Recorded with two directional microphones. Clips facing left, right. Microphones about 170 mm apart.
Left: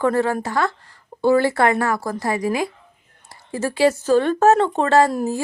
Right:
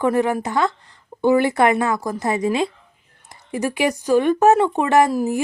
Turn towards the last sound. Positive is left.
turn(degrees=-15)  # may be behind; listen again after turning